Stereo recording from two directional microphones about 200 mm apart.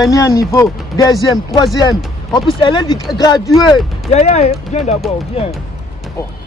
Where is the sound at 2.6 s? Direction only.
20° left (ahead or behind).